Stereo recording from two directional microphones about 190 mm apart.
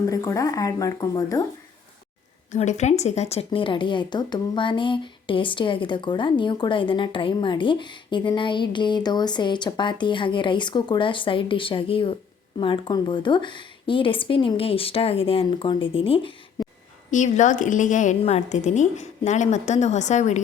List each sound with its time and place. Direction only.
0.1 s speech: 20° left (ahead or behind)
2.5 s speech: 40° left (ahead or behind)
17.1 s a woman's voice: 40° left (ahead or behind)